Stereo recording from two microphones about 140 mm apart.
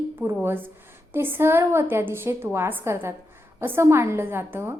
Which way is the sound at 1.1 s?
15° right (ahead or behind).